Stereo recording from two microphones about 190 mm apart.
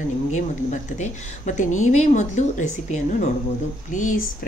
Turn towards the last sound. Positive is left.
turn(degrees=40)  # may be behind; listen again after turning